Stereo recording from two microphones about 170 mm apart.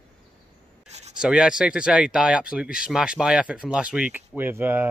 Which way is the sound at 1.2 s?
5° right (ahead or behind).